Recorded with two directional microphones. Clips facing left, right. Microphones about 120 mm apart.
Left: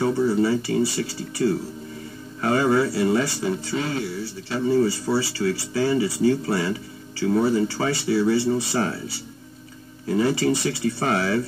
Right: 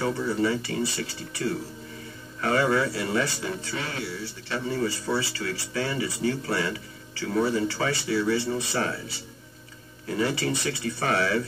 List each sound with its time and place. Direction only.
0.0 s speech: 30° left (ahead or behind)
10.0 s speech: 25° left (ahead or behind)